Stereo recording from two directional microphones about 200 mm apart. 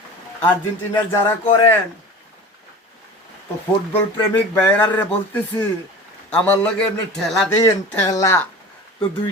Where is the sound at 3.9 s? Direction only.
10° left (ahead or behind).